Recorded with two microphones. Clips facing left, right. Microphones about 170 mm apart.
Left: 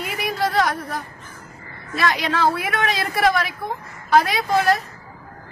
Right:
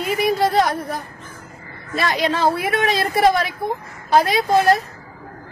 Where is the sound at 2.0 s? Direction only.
30° right (ahead or behind).